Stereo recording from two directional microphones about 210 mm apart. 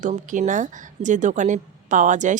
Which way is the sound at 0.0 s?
35° right (ahead or behind).